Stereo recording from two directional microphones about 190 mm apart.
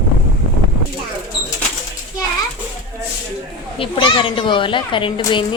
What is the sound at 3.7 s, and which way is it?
A child's voice, 30° left (ahead or behind).